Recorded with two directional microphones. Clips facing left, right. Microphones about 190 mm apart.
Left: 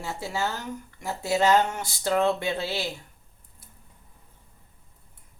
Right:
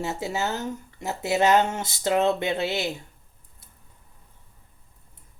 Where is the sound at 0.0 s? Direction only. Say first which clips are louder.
Right 2 dB; 20° right (ahead or behind).